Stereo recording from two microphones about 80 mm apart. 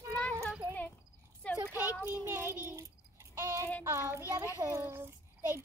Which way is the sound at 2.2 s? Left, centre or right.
Right.